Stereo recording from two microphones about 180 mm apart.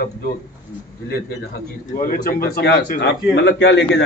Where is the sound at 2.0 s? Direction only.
55° left (ahead or behind); by 4.0 s 80° left.